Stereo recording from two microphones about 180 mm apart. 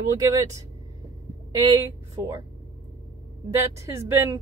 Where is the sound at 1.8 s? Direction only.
15° right (ahead or behind).